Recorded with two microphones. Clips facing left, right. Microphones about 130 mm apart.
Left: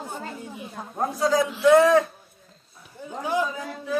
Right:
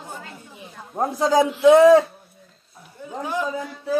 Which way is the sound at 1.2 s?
25° right (ahead or behind).